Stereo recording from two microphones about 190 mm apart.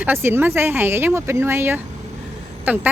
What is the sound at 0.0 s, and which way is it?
Speech, 10° right (ahead or behind).